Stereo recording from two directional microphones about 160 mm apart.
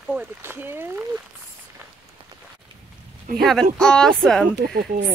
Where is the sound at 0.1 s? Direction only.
10° right (ahead or behind).